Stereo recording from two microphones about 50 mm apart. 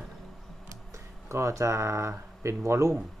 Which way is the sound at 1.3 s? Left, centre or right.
Right.